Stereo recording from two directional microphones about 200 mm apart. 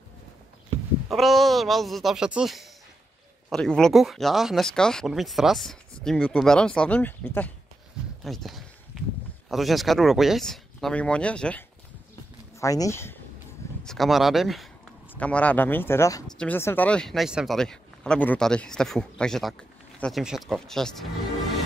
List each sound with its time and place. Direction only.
1.0 s speech: centre (ahead or behind)
12.5 s speech: 15° left (ahead or behind)
13.8 s speech: centre (ahead or behind)